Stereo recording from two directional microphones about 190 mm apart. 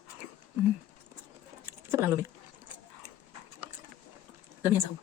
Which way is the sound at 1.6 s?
10° right (ahead or behind).